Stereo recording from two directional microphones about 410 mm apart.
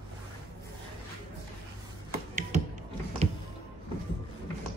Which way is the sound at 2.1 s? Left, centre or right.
Centre.